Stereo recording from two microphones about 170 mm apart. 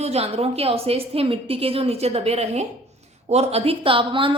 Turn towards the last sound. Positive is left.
turn(degrees=-30)  # may be behind; listen again after turning